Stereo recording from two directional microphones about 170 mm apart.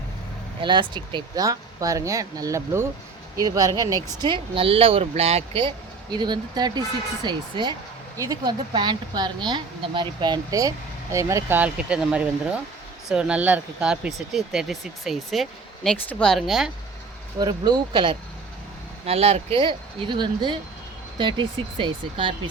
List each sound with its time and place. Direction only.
0.6 s speech: 30° right (ahead or behind); by 16.7 s centre (ahead or behind)
17.4 s speech: 25° right (ahead or behind)